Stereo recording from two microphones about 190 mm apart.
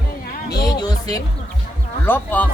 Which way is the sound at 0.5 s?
20° left (ahead or behind).